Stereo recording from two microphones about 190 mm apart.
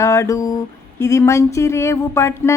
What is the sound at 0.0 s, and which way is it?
A woman's voice, 15° left (ahead or behind).